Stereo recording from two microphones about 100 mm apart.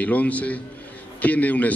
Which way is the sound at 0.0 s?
15° left (ahead or behind).